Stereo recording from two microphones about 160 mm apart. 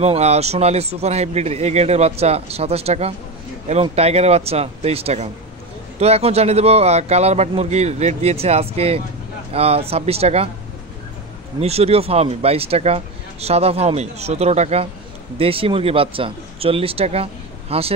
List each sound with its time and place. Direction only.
0.0 s speech: 40° right (ahead or behind)
11.6 s speech: 40° right (ahead or behind)